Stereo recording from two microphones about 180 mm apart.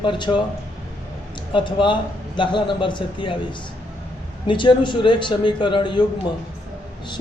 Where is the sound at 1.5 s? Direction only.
25° left (ahead or behind).